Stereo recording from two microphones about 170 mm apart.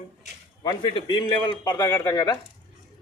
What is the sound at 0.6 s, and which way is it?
A man's voice, 30° left (ahead or behind).